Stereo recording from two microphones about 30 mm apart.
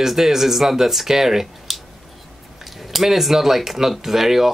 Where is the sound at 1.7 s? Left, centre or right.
Centre.